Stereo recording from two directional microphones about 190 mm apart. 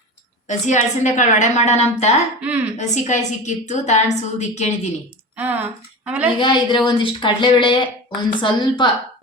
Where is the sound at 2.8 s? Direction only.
40° left (ahead or behind).